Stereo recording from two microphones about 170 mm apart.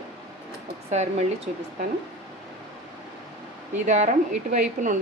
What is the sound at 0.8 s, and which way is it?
Speech, 40° right (ahead or behind).